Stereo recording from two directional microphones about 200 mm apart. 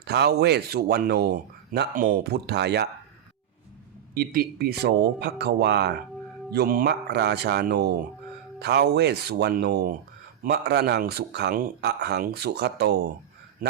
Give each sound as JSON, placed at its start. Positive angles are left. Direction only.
{"t": 0.0, "sound": "speech", "side_deg": -55}
{"t": 4.1, "sound": "speech", "side_deg": -45}
{"t": 13.6, "sound": "speech", "side_deg": -45}